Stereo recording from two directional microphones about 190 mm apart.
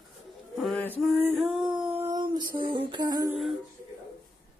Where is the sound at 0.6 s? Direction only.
5° left (ahead or behind).